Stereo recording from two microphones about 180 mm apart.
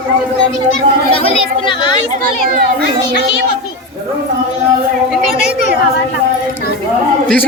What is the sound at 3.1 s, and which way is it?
Speech, 80° left.